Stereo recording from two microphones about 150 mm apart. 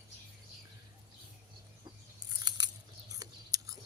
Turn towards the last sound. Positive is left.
turn(degrees=-25)  # may be behind; listen again after turning